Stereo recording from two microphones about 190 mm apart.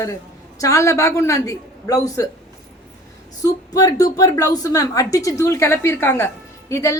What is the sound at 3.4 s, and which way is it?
A woman's voice, 20° left (ahead or behind).